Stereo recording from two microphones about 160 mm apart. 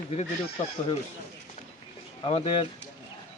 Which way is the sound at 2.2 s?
35° left (ahead or behind).